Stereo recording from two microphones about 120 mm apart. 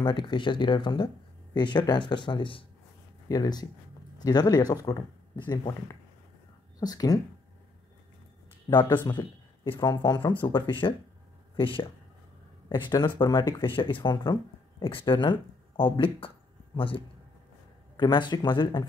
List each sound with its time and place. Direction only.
0.0 s speech: 40° left (ahead or behind)
3.3 s speech: 35° left (ahead or behind)
8.7 s a man's voice: 35° left (ahead or behind)